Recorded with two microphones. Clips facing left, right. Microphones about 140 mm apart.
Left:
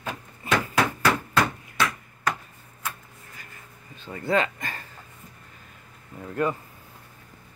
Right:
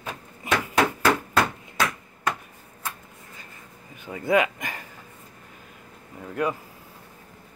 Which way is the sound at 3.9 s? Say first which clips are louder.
Right 3 dB; 15° right (ahead or behind).